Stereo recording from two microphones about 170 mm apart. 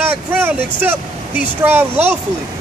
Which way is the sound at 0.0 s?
10° right (ahead or behind).